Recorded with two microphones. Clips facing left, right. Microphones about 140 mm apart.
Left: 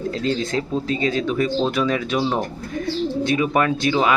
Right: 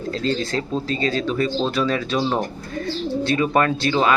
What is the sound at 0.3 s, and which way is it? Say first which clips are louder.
A man's voice: even; 15° left (ahead or behind).